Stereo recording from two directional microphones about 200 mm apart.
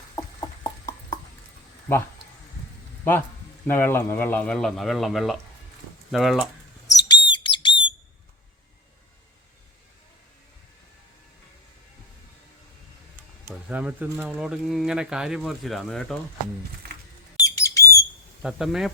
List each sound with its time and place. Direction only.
0.3 s a sound: 20° left (ahead or behind)
3.7 s speech: 10° left (ahead or behind)
6.8 s bird: 20° left (ahead or behind)
13.5 s speech: 5° right (ahead or behind)
17.4 s bird: 15° left (ahead or behind)
18.4 s speech: centre (ahead or behind)